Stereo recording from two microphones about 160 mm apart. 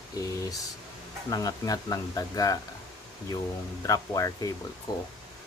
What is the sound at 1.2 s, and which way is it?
Speech, 25° left (ahead or behind).